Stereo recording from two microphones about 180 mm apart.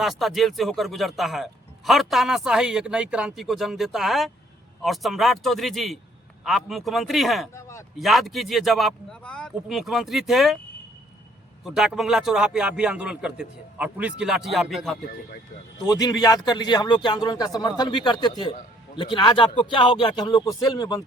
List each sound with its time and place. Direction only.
0.0 s speech: centre (ahead or behind)
7.5 s speech: 15° left (ahead or behind)
7.9 s speech: centre (ahead or behind)
11.6 s speech: 5° right (ahead or behind)
15.8 s speech: 20° left (ahead or behind)